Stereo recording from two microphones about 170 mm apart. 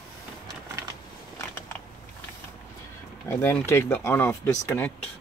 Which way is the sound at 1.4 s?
15° left (ahead or behind).